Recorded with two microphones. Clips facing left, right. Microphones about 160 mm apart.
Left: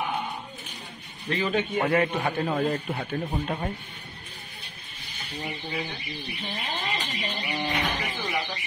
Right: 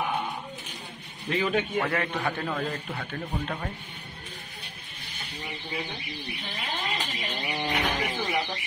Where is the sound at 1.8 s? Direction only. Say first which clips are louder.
Left 4 dB; 20° left (ahead or behind).